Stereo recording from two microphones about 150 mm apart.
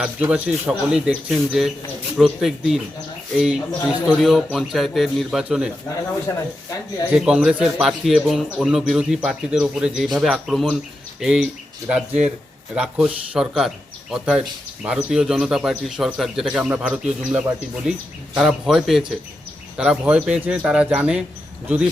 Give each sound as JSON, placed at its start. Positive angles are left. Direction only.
{"t": 0.0, "sound": "a man's voice", "side_deg": -10}
{"t": 6.2, "sound": "speech", "side_deg": 20}
{"t": 7.1, "sound": "a man's voice", "side_deg": -5}